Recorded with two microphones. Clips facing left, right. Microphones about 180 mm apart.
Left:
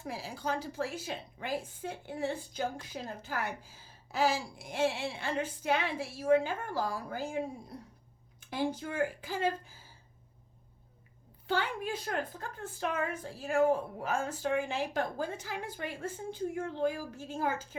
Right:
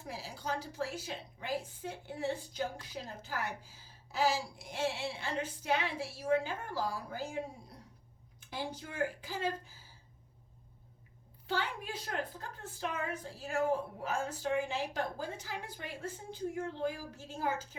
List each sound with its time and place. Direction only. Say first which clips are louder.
0.1 s a woman's voice: left 3 dB; 55° left (ahead or behind)
11.4 s a woman's voice: left 4 dB; 50° left (ahead or behind)